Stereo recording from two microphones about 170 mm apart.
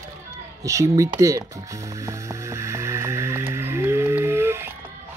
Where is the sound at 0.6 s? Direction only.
20° right (ahead or behind).